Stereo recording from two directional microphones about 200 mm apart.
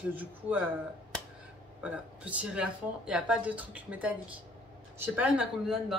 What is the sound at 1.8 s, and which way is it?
Speech, 5° right (ahead or behind).